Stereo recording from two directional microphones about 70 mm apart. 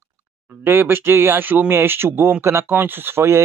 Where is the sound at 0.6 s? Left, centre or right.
Right.